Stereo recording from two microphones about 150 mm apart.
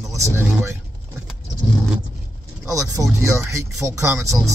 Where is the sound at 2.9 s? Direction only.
20° right (ahead or behind).